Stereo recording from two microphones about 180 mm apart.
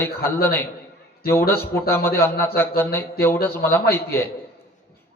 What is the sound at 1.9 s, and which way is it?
A man's voice, 15° left (ahead or behind).